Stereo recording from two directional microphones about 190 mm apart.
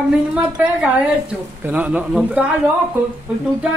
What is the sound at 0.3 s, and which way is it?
A woman's voice, 5° right (ahead or behind).